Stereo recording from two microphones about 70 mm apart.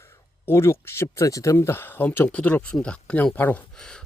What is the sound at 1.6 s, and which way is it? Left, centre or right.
Speech, left.